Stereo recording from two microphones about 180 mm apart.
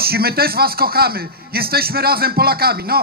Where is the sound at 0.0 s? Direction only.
60° right (ahead or behind).